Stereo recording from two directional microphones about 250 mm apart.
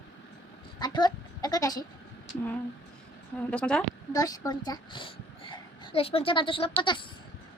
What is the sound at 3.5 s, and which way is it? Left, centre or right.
Speech, centre.